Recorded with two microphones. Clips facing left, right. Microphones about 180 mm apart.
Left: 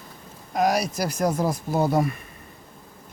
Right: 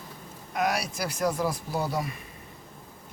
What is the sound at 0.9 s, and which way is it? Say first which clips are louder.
Speech: left 4 dB; 40° left (ahead or behind).